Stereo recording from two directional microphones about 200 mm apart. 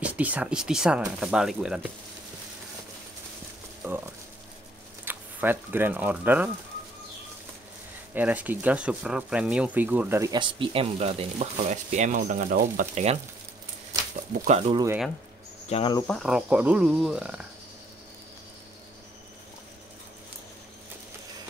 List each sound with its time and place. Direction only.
0.0 s speech: 5° right (ahead or behind)
5.0 s speech: 10° right (ahead or behind)
8.1 s speech: 10° right (ahead or behind); by 14.9 s 25° right (ahead or behind)
15.7 s cricket: 25° left (ahead or behind)
16.1 s speech: centre (ahead or behind)